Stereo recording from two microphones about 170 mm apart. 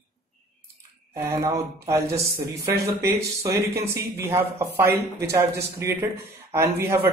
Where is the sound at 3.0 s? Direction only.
15° right (ahead or behind).